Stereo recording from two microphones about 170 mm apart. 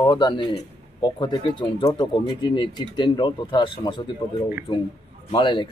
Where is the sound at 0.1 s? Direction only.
30° left (ahead or behind).